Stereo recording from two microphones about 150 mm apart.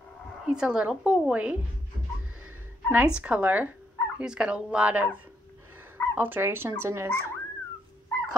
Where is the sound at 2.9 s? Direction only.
5° right (ahead or behind).